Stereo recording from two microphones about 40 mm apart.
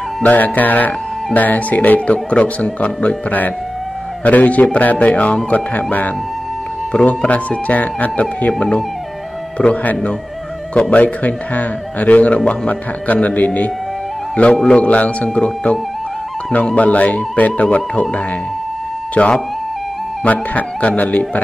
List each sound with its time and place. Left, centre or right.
0.2 s speech: left
7.2 s a man's voice: left
19.2 s speech: left